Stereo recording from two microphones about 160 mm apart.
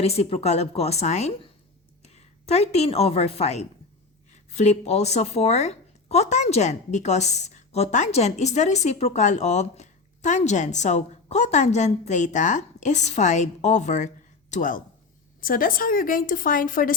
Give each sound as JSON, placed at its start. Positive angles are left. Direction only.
{"t": 0.0, "sound": "a woman's voice", "side_deg": 40}